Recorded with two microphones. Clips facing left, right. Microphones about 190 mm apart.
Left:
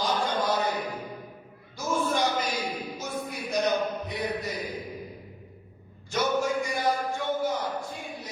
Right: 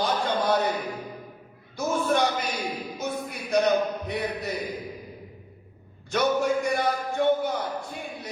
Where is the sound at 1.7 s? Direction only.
60° right (ahead or behind).